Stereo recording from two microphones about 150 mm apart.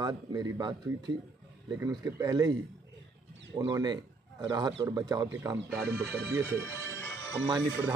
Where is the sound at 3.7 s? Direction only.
30° right (ahead or behind).